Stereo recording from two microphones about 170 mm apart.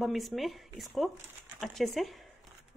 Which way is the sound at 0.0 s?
Centre (ahead or behind).